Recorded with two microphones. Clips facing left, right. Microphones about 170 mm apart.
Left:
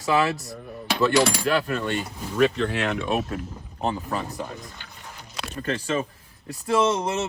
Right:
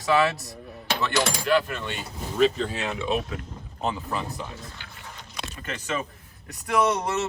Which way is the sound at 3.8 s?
40° left (ahead or behind).